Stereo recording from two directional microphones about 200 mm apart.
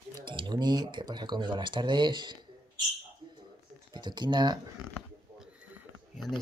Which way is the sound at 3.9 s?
20° right (ahead or behind).